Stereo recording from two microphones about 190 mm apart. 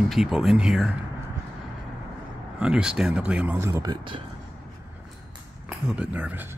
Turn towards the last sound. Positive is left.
turn(degrees=-10)  # may be behind; listen again after turning